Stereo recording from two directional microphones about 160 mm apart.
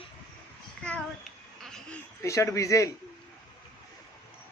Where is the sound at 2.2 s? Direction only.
20° left (ahead or behind).